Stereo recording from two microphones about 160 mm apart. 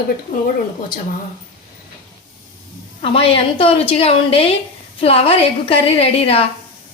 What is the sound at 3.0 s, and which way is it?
A woman's voice, 35° left (ahead or behind).